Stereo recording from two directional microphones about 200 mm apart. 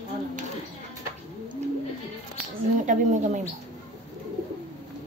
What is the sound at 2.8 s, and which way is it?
Speech, 35° right (ahead or behind).